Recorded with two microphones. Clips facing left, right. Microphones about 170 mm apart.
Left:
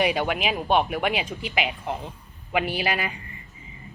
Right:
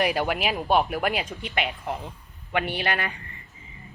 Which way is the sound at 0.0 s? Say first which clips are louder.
Left 1 dB; centre (ahead or behind).